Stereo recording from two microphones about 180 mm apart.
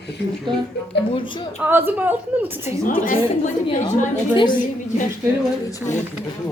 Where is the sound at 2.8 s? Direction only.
50° left (ahead or behind).